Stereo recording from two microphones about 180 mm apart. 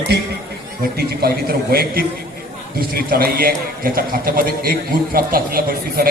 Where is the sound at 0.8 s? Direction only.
60° right (ahead or behind).